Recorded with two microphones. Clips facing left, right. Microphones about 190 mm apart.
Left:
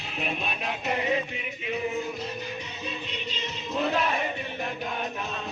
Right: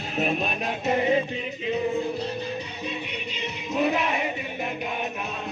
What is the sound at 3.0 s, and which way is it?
Music, 10° right (ahead or behind).